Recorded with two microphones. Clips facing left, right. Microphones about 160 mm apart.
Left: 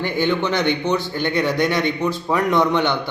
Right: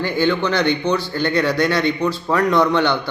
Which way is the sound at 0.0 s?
20° left (ahead or behind).